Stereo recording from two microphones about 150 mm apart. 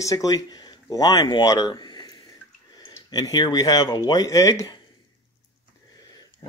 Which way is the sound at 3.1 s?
25° left (ahead or behind).